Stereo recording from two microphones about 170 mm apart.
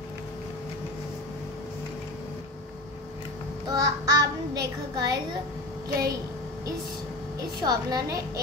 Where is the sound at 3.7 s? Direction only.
20° right (ahead or behind).